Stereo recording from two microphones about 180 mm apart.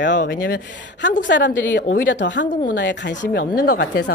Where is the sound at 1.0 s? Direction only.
90° left.